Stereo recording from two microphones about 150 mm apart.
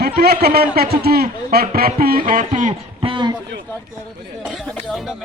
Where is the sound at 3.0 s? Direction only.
35° right (ahead or behind).